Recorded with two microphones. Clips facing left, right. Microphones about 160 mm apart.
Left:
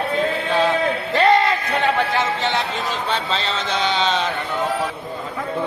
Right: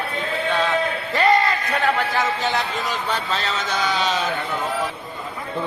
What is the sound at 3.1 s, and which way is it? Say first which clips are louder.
Speech: left 2 dB; 25° left (ahead or behind).